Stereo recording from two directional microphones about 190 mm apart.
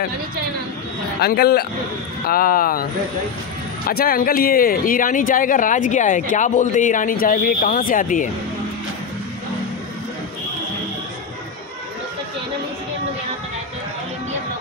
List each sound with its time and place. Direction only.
1.2 s a man's voice: 55° left (ahead or behind)
3.9 s speech: 50° left (ahead or behind)